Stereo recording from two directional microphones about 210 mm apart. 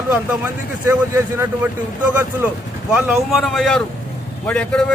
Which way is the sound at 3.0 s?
Centre (ahead or behind).